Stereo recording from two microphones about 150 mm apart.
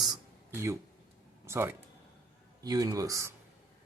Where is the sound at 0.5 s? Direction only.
20° right (ahead or behind).